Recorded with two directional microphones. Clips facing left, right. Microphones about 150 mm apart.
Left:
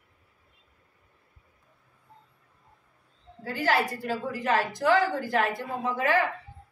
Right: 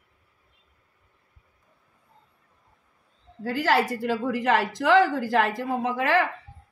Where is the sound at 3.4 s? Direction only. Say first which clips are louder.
Right 3 dB; 90° right.